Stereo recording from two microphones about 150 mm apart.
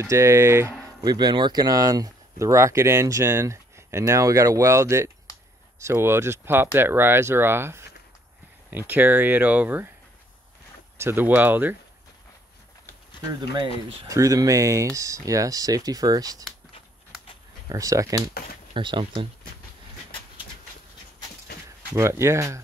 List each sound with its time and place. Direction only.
0.0 s speech: 20° right (ahead or behind)
1.0 s speech: 30° right (ahead or behind); by 9.8 s 10° right (ahead or behind)
11.0 s speech: 15° right (ahead or behind)
13.3 s speech: 30° right (ahead or behind)
17.6 s speech: 20° right (ahead or behind)
21.9 s speech: 20° right (ahead or behind)